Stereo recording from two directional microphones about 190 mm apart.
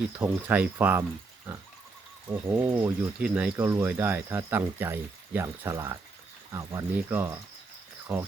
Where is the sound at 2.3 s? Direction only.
10° right (ahead or behind).